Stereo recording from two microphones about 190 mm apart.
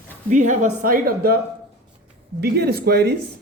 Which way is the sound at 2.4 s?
60° right (ahead or behind).